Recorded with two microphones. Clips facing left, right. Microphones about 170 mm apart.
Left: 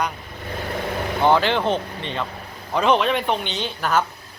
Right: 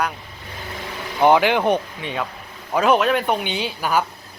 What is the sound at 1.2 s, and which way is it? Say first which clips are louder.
Speech: right 3 dB; 15° right (ahead or behind).